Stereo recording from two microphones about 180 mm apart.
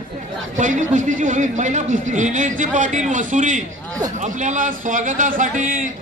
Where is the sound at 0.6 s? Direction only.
45° right (ahead or behind).